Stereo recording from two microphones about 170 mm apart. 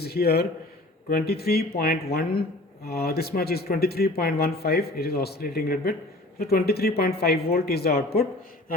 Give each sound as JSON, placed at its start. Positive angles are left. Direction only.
{"t": 0.0, "sound": "speech", "side_deg": 65}